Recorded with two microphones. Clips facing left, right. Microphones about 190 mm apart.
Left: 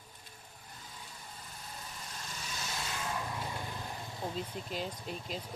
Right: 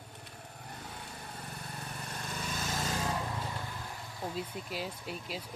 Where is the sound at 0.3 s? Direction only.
65° right (ahead or behind); by 2.9 s 45° right (ahead or behind).